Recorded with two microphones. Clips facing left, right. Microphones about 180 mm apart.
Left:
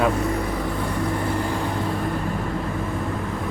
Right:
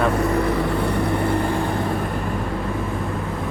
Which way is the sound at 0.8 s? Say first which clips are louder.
Right 4 dB; 65° right (ahead or behind).